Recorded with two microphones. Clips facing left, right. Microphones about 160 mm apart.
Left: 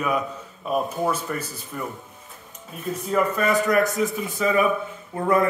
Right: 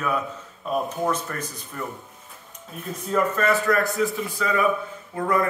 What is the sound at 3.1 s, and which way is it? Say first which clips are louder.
A man's voice: even; 10° left (ahead or behind).